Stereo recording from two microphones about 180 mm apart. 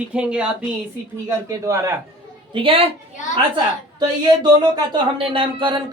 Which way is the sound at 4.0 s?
20° right (ahead or behind).